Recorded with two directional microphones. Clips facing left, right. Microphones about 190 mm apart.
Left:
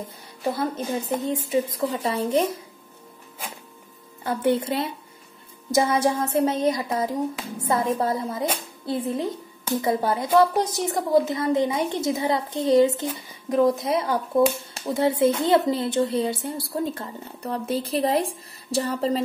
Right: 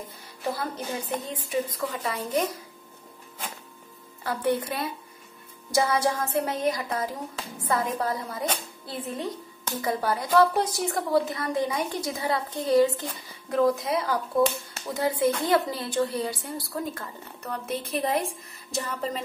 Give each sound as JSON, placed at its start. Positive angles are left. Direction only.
{"t": 0.4, "sound": "a woman's voice", "side_deg": 25}
{"t": 4.2, "sound": "a woman's voice", "side_deg": 20}